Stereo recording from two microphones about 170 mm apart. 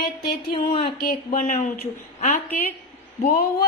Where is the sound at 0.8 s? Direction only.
60° left (ahead or behind).